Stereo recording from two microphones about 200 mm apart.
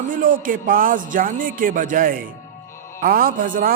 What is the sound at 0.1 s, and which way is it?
A woman's voice, 45° right (ahead or behind).